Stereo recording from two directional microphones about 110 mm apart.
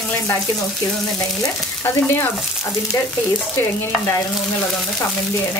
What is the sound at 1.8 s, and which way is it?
Frying, 20° left (ahead or behind).